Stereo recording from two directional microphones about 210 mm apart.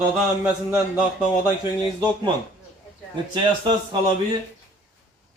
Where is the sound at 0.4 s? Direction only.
10° right (ahead or behind).